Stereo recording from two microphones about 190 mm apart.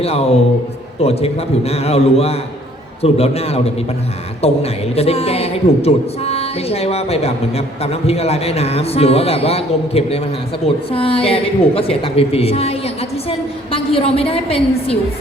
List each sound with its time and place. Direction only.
0.0 s a woman's voice: 30° left (ahead or behind)